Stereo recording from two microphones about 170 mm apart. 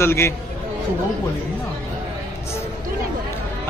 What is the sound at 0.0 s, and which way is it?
Speech, 15° left (ahead or behind).